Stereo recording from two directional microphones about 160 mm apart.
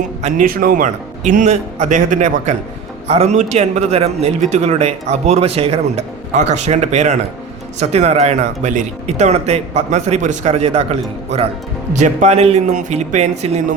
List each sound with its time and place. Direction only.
0.2 s speech: 50° right (ahead or behind)
1.3 s a man's voice: 50° right (ahead or behind)